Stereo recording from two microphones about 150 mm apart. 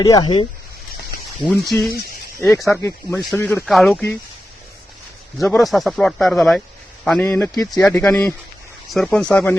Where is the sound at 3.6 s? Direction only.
Centre (ahead or behind).